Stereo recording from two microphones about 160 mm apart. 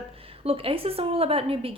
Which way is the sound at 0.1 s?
35° right (ahead or behind).